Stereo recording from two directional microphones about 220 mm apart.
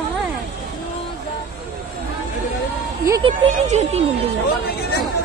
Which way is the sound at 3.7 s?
30° right (ahead or behind).